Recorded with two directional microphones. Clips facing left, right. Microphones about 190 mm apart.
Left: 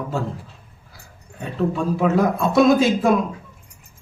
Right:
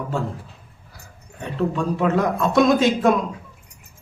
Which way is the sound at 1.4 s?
5° left (ahead or behind).